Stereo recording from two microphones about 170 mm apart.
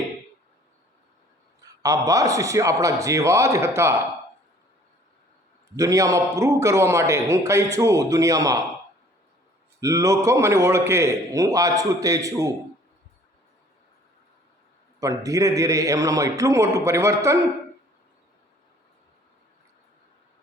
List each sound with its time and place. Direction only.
1.8 s a man's voice: 20° right (ahead or behind)
5.7 s a man's voice: 20° right (ahead or behind)
9.8 s a man's voice: 20° right (ahead or behind)
15.0 s a man's voice: 20° right (ahead or behind)